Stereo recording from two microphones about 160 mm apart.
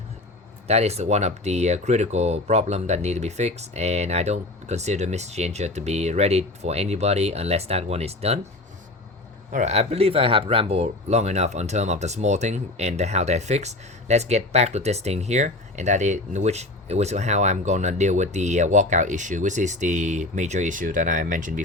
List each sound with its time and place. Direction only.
0.7 s speech: 40° right (ahead or behind)
9.5 s speech: 45° right (ahead or behind)